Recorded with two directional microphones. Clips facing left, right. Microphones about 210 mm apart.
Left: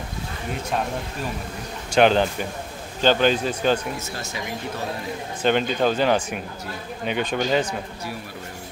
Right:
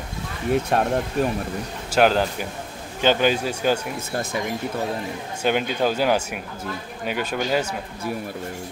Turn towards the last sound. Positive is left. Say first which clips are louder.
# left 1 dB
turn(degrees=-5)  # may be behind; listen again after turning